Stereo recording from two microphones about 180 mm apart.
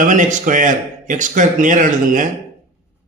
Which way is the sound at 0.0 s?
45° right (ahead or behind).